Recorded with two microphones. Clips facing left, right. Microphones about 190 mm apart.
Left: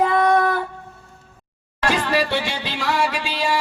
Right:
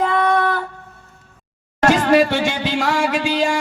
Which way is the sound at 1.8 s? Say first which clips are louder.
Right 7 dB; 45° right (ahead or behind).